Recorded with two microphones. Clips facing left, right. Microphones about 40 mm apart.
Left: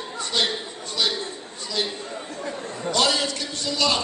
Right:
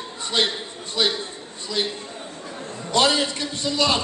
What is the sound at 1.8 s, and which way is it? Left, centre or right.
Chatter, right.